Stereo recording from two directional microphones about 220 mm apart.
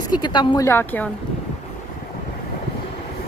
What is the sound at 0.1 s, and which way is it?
A woman's voice, 20° left (ahead or behind).